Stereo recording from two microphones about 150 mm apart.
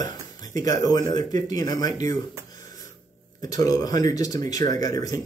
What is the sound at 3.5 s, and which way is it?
Speech, 25° left (ahead or behind).